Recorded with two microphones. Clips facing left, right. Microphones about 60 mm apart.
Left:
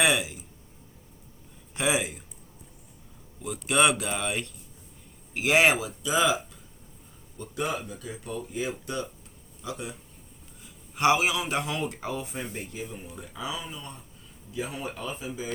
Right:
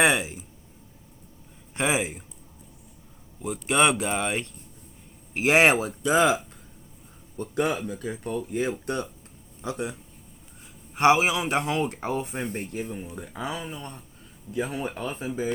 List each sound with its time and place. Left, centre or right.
0.0 s speech: right
1.7 s speech: right
3.4 s speech: right